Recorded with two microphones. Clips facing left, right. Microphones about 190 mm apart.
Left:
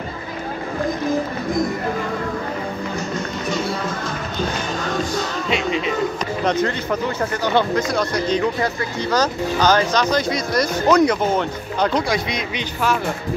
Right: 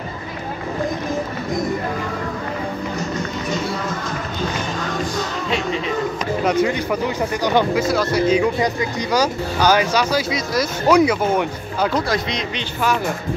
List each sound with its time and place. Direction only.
6.4 s speech: 10° right (ahead or behind)